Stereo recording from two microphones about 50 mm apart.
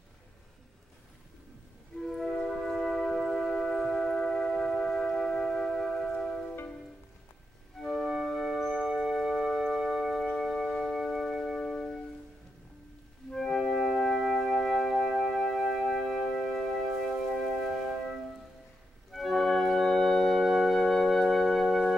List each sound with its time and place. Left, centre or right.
2.0 s music: centre
7.8 s music: centre
11.6 s music: centre
13.3 s music: centre
19.1 s organ: centre
20.3 s music: centre